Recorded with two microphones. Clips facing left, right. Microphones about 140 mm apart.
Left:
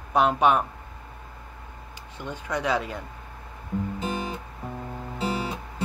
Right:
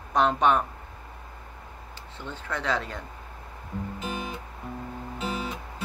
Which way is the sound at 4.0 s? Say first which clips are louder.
Left 4 dB; 35° left (ahead or behind).